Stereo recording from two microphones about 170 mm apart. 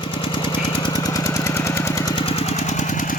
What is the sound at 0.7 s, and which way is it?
Engine, 25° left (ahead or behind).